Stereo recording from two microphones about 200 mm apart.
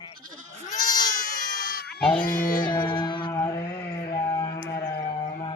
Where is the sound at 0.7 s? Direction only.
15° left (ahead or behind).